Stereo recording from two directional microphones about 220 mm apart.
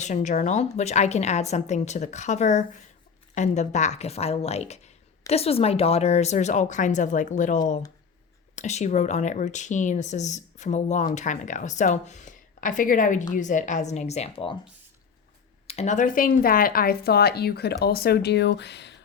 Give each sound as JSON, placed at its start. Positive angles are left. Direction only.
{"t": 0.0, "sound": "speech", "side_deg": 35}
{"t": 15.6, "sound": "speech", "side_deg": 30}